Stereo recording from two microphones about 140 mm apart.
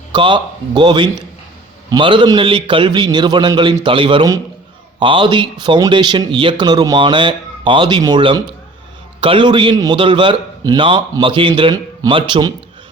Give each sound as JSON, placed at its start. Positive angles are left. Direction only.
{"t": 0.1, "sound": "a man's voice", "side_deg": -35}
{"t": 10.0, "sound": "a man's voice", "side_deg": -35}